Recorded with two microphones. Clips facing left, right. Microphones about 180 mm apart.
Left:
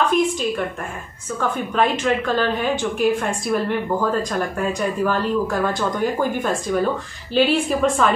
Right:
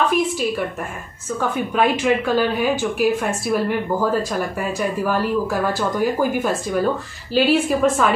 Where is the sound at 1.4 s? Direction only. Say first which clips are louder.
Right 1 dB; 10° right (ahead or behind).